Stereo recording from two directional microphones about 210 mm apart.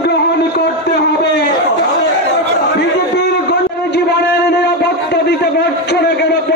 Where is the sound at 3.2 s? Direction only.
50° left (ahead or behind).